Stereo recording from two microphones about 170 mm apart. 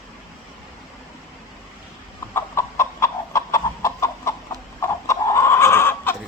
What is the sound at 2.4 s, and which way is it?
Chicken, 15° left (ahead or behind).